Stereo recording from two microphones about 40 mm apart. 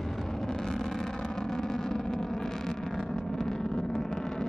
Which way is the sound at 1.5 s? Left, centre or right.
Centre.